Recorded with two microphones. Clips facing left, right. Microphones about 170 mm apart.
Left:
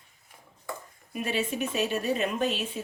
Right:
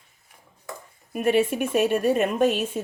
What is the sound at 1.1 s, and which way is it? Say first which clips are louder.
A woman's voice: right 9 dB; 55° right (ahead or behind).